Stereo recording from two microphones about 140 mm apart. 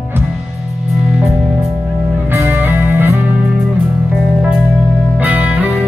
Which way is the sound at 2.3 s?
15° right (ahead or behind).